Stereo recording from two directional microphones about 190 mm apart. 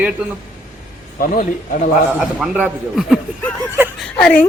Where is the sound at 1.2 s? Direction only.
45° left (ahead or behind).